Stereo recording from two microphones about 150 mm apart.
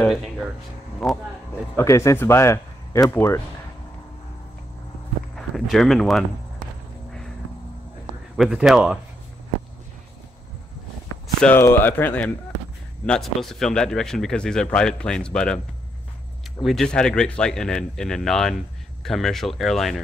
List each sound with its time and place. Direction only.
1.0 s speech: centre (ahead or behind)
1.8 s speech: 20° left (ahead or behind)
5.3 s speech: centre (ahead or behind)
8.4 s speech: 5° right (ahead or behind)
11.4 s speech: 15° left (ahead or behind)
16.6 s speech: 5° left (ahead or behind)